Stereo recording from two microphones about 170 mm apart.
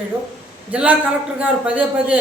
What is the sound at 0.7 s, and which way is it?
A woman's voice, 10° right (ahead or behind).